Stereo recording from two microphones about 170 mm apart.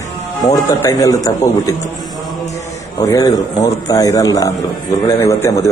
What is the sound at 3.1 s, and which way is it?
A man's voice, 20° left (ahead or behind).